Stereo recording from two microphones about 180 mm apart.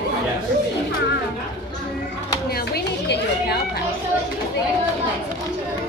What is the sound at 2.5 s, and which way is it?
Chatter, 60° left (ahead or behind).